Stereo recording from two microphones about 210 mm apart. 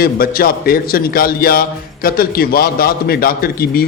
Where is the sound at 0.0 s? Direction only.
45° left (ahead or behind).